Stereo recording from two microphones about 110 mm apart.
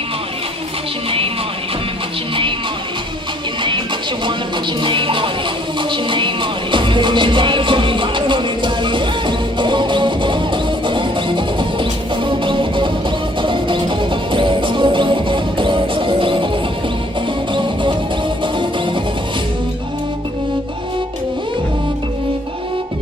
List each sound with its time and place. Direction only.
4.8 s music: 50° right (ahead or behind)